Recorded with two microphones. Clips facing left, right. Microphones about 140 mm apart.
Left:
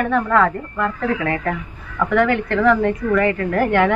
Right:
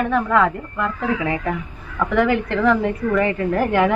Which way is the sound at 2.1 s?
20° right (ahead or behind).